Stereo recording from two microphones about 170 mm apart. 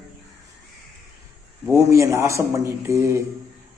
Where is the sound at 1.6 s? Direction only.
15° right (ahead or behind).